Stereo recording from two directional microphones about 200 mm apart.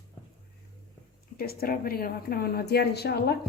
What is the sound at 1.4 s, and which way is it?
A woman's voice, 50° left (ahead or behind).